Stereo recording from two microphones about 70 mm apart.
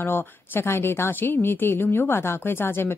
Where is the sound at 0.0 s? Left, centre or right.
Left.